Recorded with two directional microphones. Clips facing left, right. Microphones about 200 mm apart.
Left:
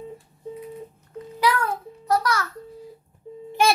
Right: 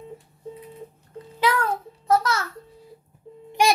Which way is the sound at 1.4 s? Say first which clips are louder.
Even; 25° right (ahead or behind).